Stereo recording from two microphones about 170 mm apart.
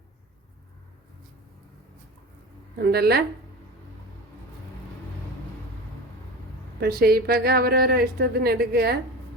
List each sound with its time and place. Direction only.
2.7 s a woman's voice: 65° right (ahead or behind)
6.7 s a woman's voice: 65° right (ahead or behind)